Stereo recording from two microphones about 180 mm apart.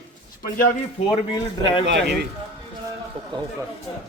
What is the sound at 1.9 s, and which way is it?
Speech, 65° right (ahead or behind).